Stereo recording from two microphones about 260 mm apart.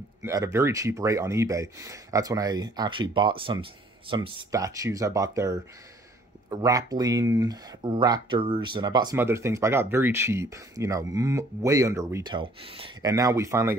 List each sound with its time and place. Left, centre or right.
0.2 s speech: centre